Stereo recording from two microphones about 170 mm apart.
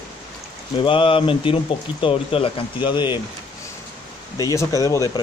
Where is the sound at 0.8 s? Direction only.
30° left (ahead or behind).